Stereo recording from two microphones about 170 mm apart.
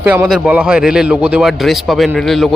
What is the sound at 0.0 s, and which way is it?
A man's voice, 10° right (ahead or behind).